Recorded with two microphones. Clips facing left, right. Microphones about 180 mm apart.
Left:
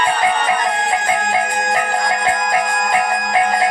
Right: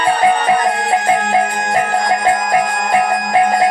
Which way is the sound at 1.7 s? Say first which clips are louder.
Right 4 dB; 30° right (ahead or behind).